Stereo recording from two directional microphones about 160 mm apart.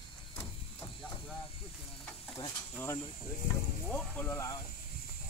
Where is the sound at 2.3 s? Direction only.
20° left (ahead or behind).